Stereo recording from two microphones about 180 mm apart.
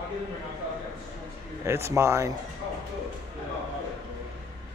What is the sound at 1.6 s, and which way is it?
Speech, 15° right (ahead or behind).